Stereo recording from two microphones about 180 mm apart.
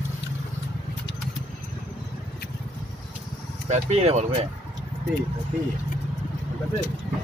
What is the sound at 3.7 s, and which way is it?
Speech, 35° right (ahead or behind).